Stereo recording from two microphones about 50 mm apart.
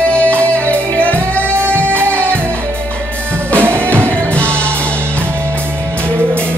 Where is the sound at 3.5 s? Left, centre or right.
Right.